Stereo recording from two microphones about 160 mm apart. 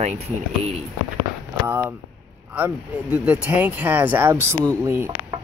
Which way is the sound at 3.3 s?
10° right (ahead or behind).